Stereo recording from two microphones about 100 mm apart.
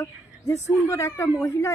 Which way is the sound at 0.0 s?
25° left (ahead or behind).